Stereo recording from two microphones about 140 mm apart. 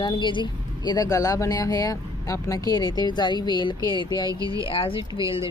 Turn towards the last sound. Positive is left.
turn(degrees=40)  # may be behind; listen again after turning